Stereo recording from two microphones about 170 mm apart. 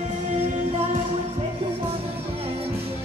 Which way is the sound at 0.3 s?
35° right (ahead or behind).